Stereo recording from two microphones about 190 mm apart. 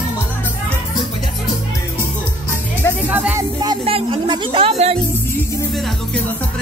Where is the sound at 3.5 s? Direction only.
25° right (ahead or behind).